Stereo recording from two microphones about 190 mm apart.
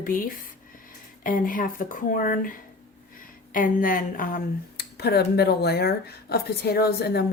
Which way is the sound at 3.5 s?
45° left (ahead or behind).